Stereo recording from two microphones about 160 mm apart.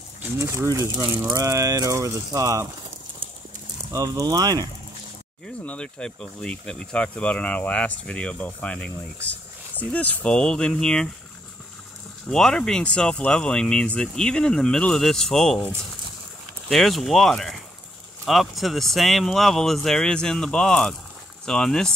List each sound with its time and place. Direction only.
0.2 s speech: 15° right (ahead or behind)
3.9 s speech: 20° right (ahead or behind)
5.7 s speech: 5° left (ahead or behind)
12.3 s speech: 5° left (ahead or behind)
16.6 s speech: centre (ahead or behind)